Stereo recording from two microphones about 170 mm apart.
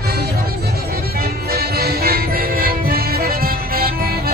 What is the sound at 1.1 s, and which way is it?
Music, 65° right (ahead or behind).